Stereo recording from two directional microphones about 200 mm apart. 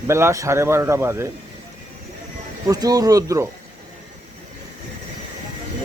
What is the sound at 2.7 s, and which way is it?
Speech, 20° right (ahead or behind).